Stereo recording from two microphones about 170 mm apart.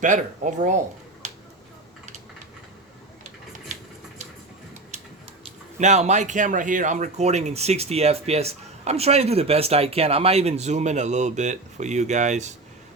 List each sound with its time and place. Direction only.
0.0 s speech: 45° right (ahead or behind)
5.8 s speech: 40° right (ahead or behind)